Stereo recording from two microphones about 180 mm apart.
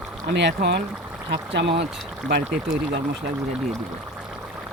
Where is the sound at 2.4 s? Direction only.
5° right (ahead or behind).